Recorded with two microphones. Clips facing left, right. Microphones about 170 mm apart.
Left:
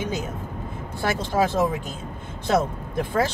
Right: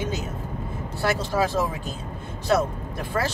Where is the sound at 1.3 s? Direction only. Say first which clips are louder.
Left 2 dB; 20° left (ahead or behind).